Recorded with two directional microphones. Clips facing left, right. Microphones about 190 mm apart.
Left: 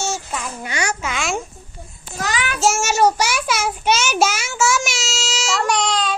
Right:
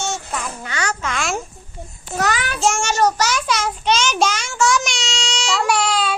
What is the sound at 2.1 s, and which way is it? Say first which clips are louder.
Child singing: right 4 dB; 55° right (ahead or behind).